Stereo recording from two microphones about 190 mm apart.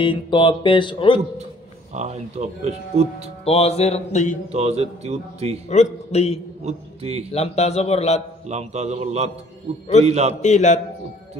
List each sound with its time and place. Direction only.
0.0 s speech: 25° left (ahead or behind)
1.9 s speech: 35° right (ahead or behind)
3.4 s a man's voice: 30° left (ahead or behind)
4.5 s speech: 35° right (ahead or behind)
5.7 s a man's voice: 35° left (ahead or behind)
6.6 s a man's voice: 35° right (ahead or behind)
7.3 s a man's voice: 35° left (ahead or behind)
8.5 s speech: 35° right (ahead or behind)
10.4 s a man's voice: 40° left (ahead or behind)